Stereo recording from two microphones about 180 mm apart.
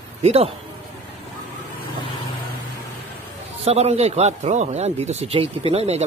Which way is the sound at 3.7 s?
35° right (ahead or behind).